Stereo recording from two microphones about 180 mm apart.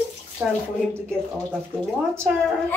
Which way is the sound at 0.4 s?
15° right (ahead or behind).